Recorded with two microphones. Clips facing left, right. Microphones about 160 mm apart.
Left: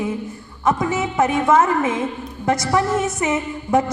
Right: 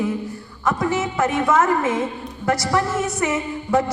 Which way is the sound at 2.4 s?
20° left (ahead or behind).